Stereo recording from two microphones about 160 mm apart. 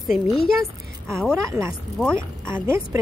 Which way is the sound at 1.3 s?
15° right (ahead or behind).